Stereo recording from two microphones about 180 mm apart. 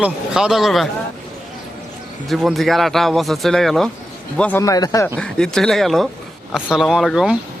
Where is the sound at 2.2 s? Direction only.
Centre (ahead or behind); by 5.1 s 20° left (ahead or behind).